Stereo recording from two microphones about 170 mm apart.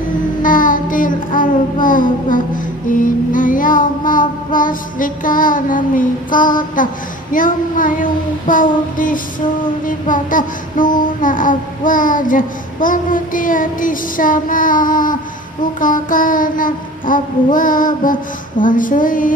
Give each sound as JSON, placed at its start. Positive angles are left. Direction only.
{"t": 0.4, "sound": "child singing", "side_deg": 55}